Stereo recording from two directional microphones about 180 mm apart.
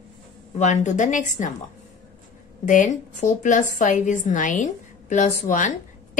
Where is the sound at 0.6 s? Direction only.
40° left (ahead or behind).